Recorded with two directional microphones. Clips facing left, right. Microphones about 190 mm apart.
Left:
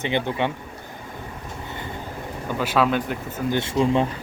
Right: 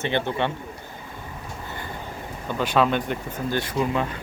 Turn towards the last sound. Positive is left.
turn(degrees=30)  # may be behind; listen again after turning